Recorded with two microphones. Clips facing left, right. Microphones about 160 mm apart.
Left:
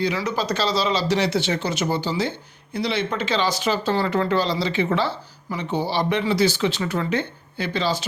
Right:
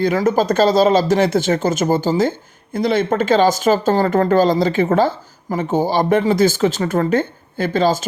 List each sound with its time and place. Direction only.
0.0 s speech: 50° right (ahead or behind)